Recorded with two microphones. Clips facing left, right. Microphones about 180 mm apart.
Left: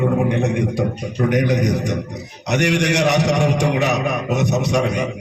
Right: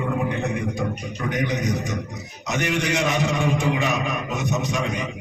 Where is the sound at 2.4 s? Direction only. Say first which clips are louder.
Left 6 dB; 70° left (ahead or behind).